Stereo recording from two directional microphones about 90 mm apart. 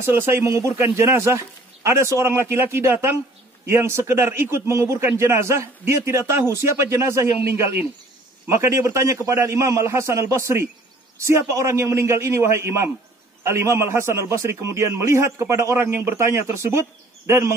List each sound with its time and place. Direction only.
0.0 s a man's voice: 25° right (ahead or behind)